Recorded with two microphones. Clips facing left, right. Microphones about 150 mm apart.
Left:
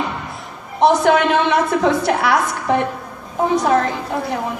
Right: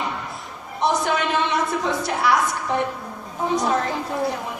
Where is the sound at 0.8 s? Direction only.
65° left (ahead or behind).